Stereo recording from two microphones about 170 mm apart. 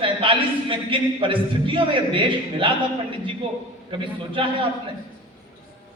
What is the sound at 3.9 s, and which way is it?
Speech, 30° right (ahead or behind).